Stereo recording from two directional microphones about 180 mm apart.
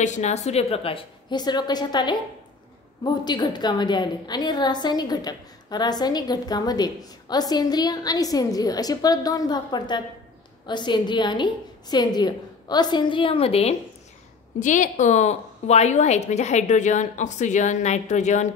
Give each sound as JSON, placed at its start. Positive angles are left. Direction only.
{"t": 0.0, "sound": "a woman's voice", "side_deg": 40}
{"t": 14.6, "sound": "a woman's voice", "side_deg": 45}